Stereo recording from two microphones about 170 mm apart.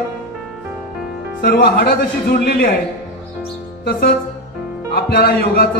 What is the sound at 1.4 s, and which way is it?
Speech, 65° left (ahead or behind).